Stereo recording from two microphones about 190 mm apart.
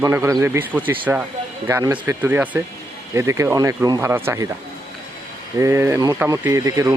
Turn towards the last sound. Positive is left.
turn(degrees=-15)  # may be behind; listen again after turning